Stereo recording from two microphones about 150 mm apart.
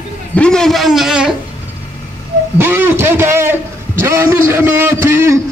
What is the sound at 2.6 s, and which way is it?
A man's voice, 15° right (ahead or behind).